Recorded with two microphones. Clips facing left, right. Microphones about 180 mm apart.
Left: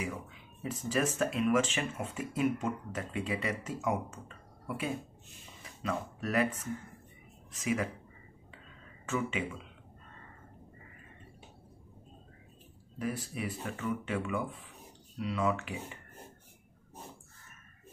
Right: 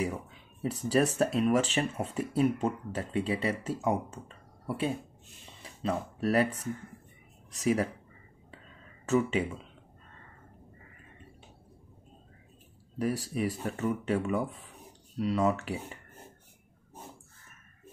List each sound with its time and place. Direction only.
0.0 s speech: 35° right (ahead or behind)
9.0 s speech: 40° right (ahead or behind)
13.3 s speech: 40° right (ahead or behind)